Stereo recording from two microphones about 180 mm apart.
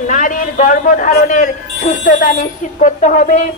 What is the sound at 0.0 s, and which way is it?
A woman's voice, 45° left (ahead or behind).